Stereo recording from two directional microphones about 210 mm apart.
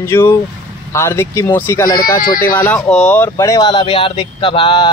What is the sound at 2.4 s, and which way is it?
Speech, 10° left (ahead or behind).